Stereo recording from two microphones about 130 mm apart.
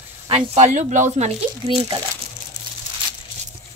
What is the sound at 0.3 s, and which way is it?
Speech, 65° right (ahead or behind).